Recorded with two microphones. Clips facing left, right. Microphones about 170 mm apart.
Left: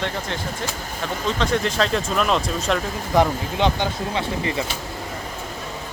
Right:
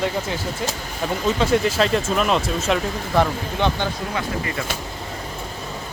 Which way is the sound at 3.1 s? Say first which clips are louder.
Left 2 dB; 15° left (ahead or behind).